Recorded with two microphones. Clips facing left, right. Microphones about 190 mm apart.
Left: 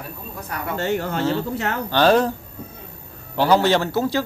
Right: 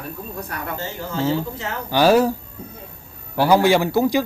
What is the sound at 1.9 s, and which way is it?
Speech, 10° right (ahead or behind).